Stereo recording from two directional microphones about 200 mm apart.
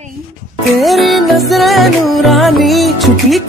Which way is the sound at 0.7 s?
Centre (ahead or behind).